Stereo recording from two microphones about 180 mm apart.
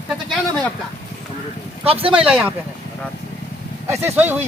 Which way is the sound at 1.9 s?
30° right (ahead or behind).